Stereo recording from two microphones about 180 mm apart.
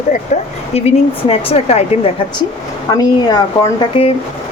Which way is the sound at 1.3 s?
35° left (ahead or behind).